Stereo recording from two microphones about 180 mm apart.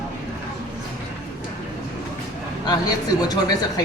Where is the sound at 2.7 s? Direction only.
20° left (ahead or behind).